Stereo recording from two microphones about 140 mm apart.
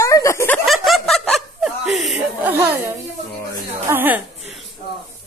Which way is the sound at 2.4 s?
10° right (ahead or behind).